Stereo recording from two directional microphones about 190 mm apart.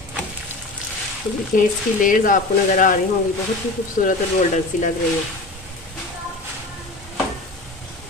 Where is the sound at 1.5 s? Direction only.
45° left (ahead or behind).